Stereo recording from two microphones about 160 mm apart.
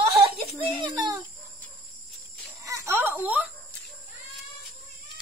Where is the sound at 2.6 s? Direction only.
20° right (ahead or behind).